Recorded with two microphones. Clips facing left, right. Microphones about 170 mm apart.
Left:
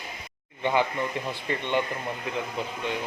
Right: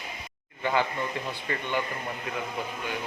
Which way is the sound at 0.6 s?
20° left (ahead or behind).